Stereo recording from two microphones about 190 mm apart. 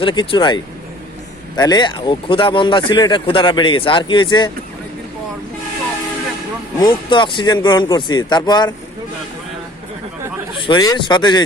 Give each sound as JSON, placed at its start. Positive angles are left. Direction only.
{"t": 0.0, "sound": "speech", "side_deg": 25}
{"t": 6.7, "sound": "speech", "side_deg": 25}
{"t": 10.6, "sound": "speech", "side_deg": 25}